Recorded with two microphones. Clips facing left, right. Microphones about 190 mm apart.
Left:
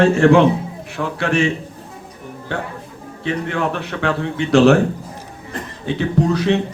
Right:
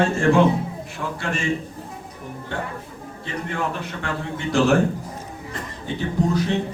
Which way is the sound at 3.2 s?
75° left (ahead or behind).